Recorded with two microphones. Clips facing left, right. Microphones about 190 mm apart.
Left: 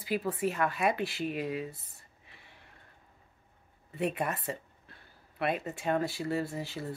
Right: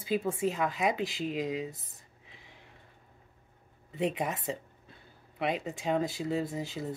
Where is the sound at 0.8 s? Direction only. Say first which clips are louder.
Even; 90° right.